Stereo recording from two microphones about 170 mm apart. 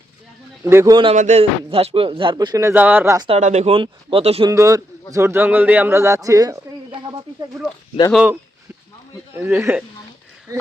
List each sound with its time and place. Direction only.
0.6 s speech: 15° right (ahead or behind)
1.1 s speech: 45° right (ahead or behind); by 3.2 s 10° right (ahead or behind)
3.2 s speech: 35° right (ahead or behind)
4.4 s a man's voice: 20° right (ahead or behind)
8.1 s speech: 10° right (ahead or behind)